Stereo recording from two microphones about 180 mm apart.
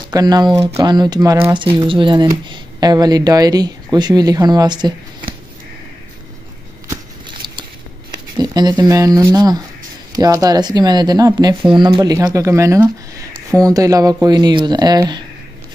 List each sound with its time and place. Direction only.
0.1 s speech: 20° right (ahead or behind)
6.9 s a sound: 25° right (ahead or behind)
8.4 s speech: 25° right (ahead or behind)